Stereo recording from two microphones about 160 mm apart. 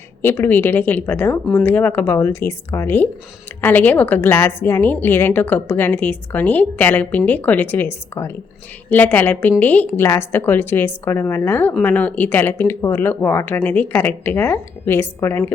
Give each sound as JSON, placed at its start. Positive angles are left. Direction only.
{"t": 0.2, "sound": "a woman's voice", "side_deg": 15}